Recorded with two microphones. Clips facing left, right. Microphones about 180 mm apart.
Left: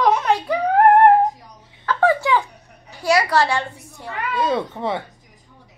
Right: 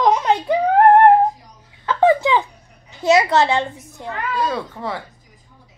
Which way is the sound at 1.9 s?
20° right (ahead or behind).